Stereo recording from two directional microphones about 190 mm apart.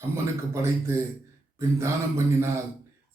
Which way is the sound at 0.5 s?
15° right (ahead or behind).